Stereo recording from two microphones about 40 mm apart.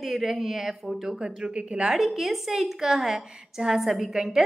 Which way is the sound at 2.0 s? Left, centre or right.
Centre.